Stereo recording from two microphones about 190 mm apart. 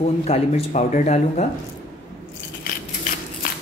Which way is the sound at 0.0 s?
35° left (ahead or behind).